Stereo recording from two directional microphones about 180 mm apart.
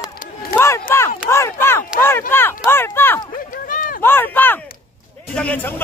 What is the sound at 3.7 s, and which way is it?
Run, 50° left (ahead or behind).